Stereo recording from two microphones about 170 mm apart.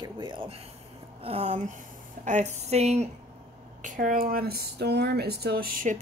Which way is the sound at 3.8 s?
50° right (ahead or behind).